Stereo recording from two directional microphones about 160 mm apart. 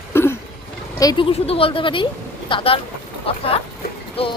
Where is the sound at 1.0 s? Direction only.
30° left (ahead or behind).